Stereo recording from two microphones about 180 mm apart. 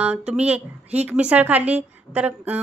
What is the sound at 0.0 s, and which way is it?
A woman's voice, 5° right (ahead or behind).